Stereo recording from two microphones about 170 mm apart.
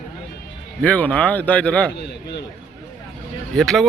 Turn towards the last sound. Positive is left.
turn(degrees=0)  # may be behind; listen again after turning